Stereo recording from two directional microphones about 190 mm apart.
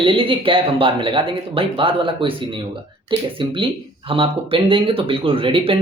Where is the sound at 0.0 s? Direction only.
25° right (ahead or behind).